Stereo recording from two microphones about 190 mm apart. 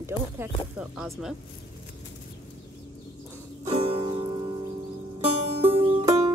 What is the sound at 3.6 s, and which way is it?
Music, 30° right (ahead or behind).